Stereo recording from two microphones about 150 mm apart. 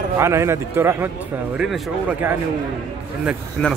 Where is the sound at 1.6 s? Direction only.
5° right (ahead or behind).